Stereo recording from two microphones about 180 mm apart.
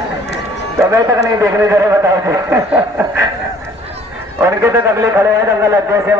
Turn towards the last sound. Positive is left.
turn(degrees=-15)  # may be behind; listen again after turning